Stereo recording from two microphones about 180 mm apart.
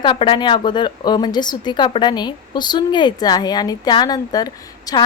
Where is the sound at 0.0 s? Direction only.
30° left (ahead or behind).